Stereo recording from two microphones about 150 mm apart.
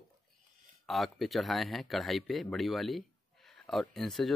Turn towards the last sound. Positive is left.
turn(degrees=0)  # may be behind; listen again after turning